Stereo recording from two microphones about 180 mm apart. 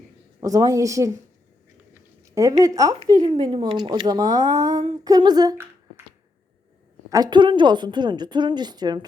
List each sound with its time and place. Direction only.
0.3 s a woman's voice: 20° right (ahead or behind)
1.9 s a sound: 15° right (ahead or behind)
3.2 s a woman's voice: 30° right (ahead or behind)
7.1 s a woman's voice: 25° right (ahead or behind)